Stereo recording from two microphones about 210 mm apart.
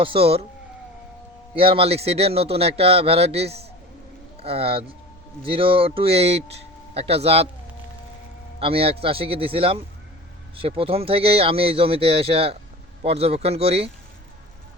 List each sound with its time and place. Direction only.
0.0 s a man's voice: 25° right (ahead or behind)
1.5 s a man's voice: 25° right (ahead or behind)
8.5 s a man's voice: 25° right (ahead or behind)